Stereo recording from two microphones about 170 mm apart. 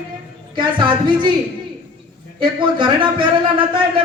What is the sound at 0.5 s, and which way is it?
Speech, 30° right (ahead or behind).